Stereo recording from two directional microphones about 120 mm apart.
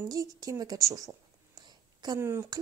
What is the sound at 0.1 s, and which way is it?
Speech, 30° right (ahead or behind).